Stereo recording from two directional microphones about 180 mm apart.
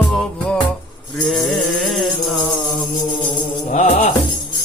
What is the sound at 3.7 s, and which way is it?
Music, 45° left (ahead or behind).